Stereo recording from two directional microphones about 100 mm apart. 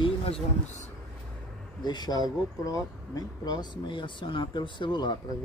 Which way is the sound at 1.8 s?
45° left (ahead or behind).